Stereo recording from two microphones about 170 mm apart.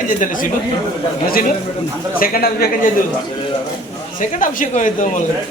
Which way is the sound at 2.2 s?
60° left (ahead or behind).